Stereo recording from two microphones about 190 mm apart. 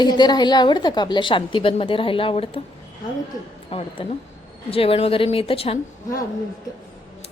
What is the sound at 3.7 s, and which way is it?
A woman's voice, 30° left (ahead or behind).